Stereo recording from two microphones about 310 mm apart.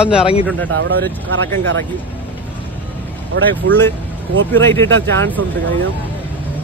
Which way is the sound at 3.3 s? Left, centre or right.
Right.